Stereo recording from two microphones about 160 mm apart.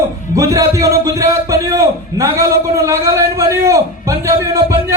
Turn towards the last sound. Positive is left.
turn(degrees=-20)  # may be behind; listen again after turning